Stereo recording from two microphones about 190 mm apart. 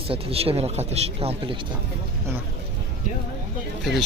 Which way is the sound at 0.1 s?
30° right (ahead or behind).